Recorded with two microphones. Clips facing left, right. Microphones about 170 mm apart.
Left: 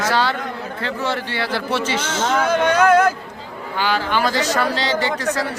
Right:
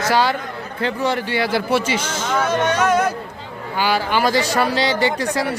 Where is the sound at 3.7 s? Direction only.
10° right (ahead or behind).